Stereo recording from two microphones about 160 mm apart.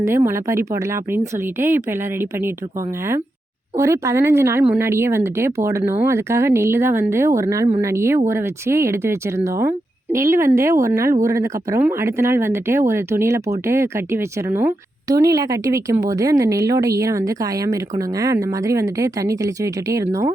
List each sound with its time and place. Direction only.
0.0 s speech: 20° right (ahead or behind)
3.8 s a woman's voice: 15° right (ahead or behind)